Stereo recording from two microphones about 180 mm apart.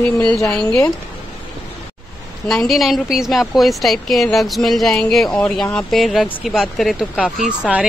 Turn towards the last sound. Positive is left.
turn(degrees=-5)  # may be behind; listen again after turning